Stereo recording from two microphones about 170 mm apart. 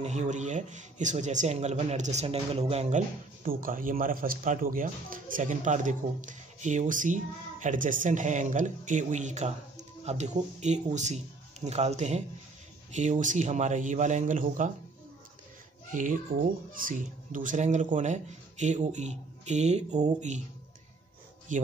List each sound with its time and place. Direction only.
0.0 s speech: 40° right (ahead or behind)
3.4 s speech: 55° right (ahead or behind)
15.9 s speech: 50° right (ahead or behind)
21.5 s speech: 50° right (ahead or behind)